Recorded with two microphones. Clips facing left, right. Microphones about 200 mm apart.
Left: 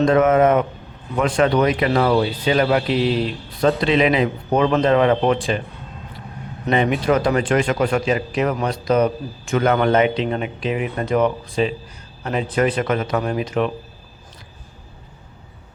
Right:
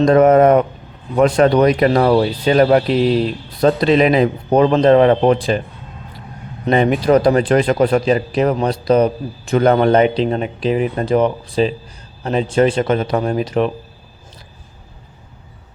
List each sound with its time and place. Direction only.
0.0 s speech: 40° right (ahead or behind)
6.7 s speech: 40° right (ahead or behind)